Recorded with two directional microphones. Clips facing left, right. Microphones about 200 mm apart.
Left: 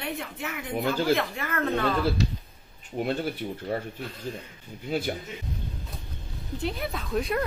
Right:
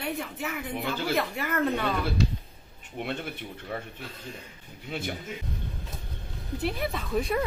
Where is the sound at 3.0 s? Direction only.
35° left (ahead or behind).